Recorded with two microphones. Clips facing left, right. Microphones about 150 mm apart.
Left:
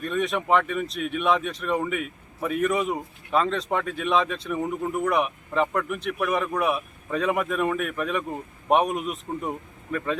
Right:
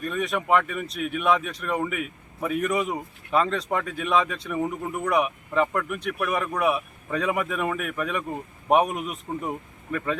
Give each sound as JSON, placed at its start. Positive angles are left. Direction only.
{"t": 0.0, "sound": "speech", "side_deg": 0}